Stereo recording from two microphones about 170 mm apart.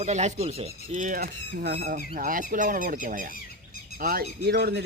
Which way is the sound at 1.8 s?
55° right (ahead or behind).